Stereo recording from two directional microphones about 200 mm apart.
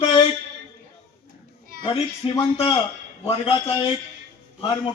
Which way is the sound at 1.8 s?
25° left (ahead or behind).